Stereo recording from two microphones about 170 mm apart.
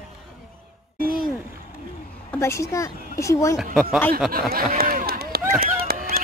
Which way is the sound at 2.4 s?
15° left (ahead or behind).